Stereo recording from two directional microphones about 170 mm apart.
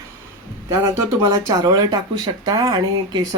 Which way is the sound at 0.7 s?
15° right (ahead or behind).